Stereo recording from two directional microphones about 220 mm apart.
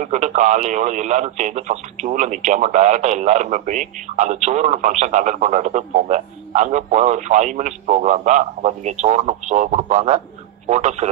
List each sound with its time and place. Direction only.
0.0 s speech: 35° right (ahead or behind)